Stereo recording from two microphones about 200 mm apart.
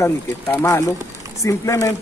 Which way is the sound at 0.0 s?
10° left (ahead or behind).